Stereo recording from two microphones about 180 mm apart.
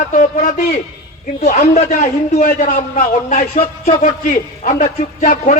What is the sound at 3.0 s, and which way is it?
A man's voice, 35° left (ahead or behind).